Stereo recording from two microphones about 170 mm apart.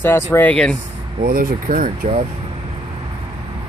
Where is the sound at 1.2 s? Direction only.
60° right (ahead or behind).